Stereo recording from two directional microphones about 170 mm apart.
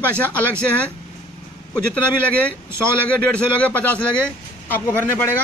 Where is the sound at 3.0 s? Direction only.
10° left (ahead or behind).